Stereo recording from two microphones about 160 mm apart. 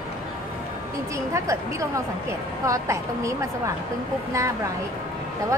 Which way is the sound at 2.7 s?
20° right (ahead or behind).